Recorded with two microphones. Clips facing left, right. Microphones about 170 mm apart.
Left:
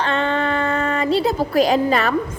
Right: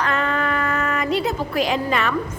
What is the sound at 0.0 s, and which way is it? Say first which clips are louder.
Child singing: left 2 dB; 30° left (ahead or behind).